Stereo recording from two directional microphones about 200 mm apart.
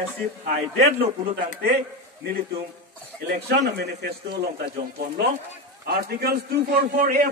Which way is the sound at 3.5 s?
55° right (ahead or behind).